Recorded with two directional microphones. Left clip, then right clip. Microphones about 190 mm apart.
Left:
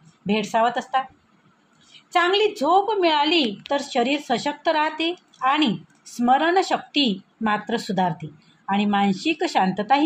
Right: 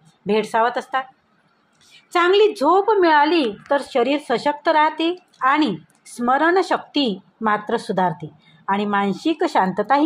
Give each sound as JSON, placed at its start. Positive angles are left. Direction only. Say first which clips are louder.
{"t": 0.3, "sound": "a woman's voice", "louder": "right 3 dB", "side_deg": -25}